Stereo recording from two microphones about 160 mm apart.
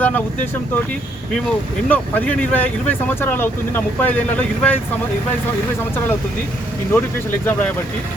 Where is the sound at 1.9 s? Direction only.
10° left (ahead or behind).